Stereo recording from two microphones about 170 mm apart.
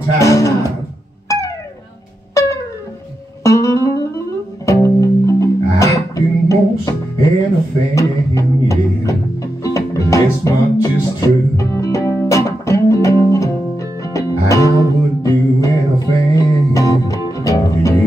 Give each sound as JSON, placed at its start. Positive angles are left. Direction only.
{"t": 0.2, "sound": "music", "side_deg": 20}
{"t": 3.4, "sound": "music", "side_deg": 20}